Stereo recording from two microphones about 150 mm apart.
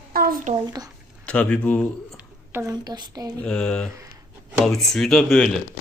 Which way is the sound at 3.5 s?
5° left (ahead or behind).